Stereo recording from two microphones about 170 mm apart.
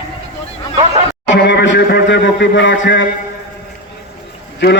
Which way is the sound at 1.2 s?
90° left.